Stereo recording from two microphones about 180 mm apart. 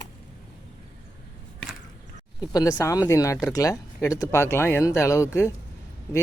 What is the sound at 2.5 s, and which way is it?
Speech, 20° left (ahead or behind).